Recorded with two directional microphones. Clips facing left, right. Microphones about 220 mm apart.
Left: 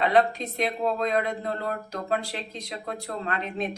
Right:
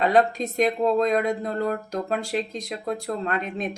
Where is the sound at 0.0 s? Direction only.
45° right (ahead or behind).